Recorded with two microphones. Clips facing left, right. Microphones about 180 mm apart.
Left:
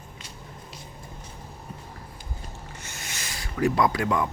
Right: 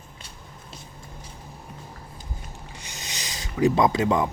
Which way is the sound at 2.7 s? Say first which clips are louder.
Right 3 dB; 15° right (ahead or behind).